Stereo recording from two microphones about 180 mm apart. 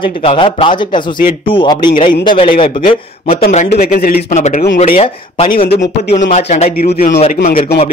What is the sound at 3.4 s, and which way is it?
Speech, 40° left (ahead or behind).